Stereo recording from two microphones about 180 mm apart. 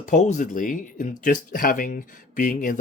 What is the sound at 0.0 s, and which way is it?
Speech, 45° left (ahead or behind).